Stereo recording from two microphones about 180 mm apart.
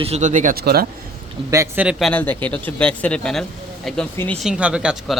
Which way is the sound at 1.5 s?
15° right (ahead or behind).